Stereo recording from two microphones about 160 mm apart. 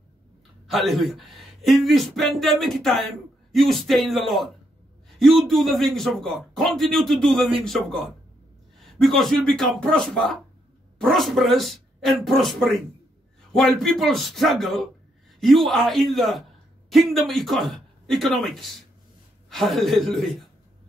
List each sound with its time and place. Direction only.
0.7 s a man's voice: centre (ahead or behind)